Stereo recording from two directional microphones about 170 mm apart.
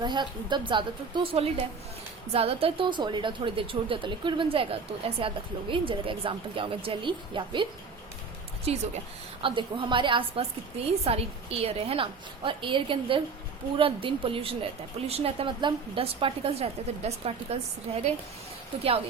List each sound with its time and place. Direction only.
0.0 s a woman's voice: 25° right (ahead or behind)